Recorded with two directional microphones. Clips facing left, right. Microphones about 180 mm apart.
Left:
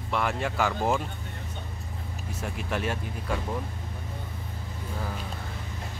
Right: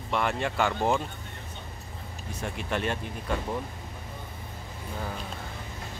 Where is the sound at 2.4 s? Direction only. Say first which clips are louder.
Right 1 dB; 5° left (ahead or behind).